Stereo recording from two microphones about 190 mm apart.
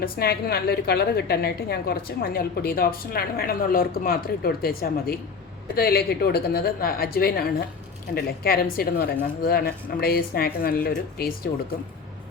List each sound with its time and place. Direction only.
0.0 s a woman's voice: 55° left (ahead or behind)